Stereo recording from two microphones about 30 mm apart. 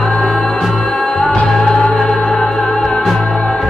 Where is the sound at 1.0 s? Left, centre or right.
Left.